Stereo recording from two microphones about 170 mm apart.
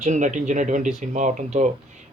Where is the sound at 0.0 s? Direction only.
45° right (ahead or behind).